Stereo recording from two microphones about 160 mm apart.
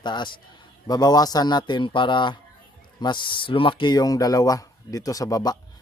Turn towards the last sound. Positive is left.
turn(degrees=25)  # may be behind; listen again after turning